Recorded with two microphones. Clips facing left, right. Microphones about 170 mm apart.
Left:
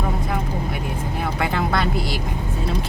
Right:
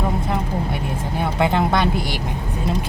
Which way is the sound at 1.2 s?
20° right (ahead or behind).